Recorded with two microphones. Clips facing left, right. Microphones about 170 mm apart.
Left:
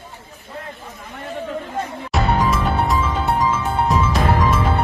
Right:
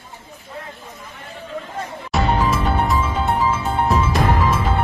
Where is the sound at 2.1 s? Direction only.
Centre (ahead or behind).